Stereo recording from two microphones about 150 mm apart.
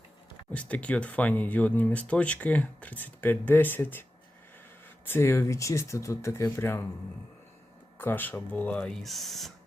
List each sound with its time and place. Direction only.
0.5 s speech: 10° left (ahead or behind)
5.0 s speech: 15° left (ahead or behind)
7.9 s speech: 15° left (ahead or behind)